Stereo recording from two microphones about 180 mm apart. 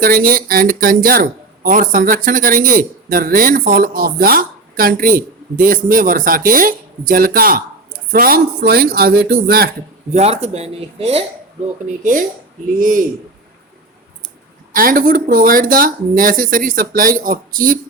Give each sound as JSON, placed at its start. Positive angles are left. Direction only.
{"t": 0.0, "sound": "speech", "side_deg": -55}
{"t": 10.1, "sound": "speech", "side_deg": -35}
{"t": 11.6, "sound": "speech", "side_deg": -45}
{"t": 14.7, "sound": "speech", "side_deg": -50}